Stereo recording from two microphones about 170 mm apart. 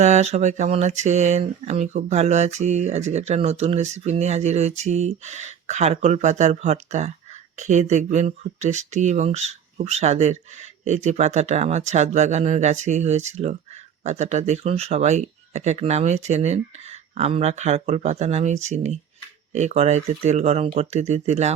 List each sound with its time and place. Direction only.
0.0 s speech: 40° right (ahead or behind)